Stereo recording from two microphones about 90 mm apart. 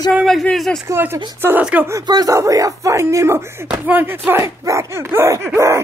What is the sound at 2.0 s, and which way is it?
Speech, 45° right (ahead or behind).